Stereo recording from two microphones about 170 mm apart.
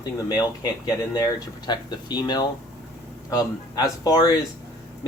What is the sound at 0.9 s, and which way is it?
Speech, 25° left (ahead or behind).